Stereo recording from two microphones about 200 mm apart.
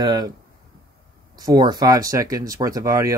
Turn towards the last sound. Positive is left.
turn(degrees=-15)  # may be behind; listen again after turning